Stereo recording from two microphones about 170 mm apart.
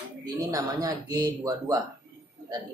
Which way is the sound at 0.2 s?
20° right (ahead or behind).